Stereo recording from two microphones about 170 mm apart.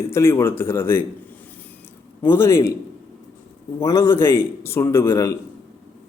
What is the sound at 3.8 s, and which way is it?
A man's voice, 15° left (ahead or behind).